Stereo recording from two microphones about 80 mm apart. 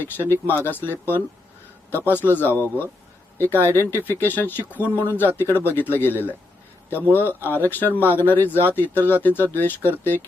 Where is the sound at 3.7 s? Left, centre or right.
Left.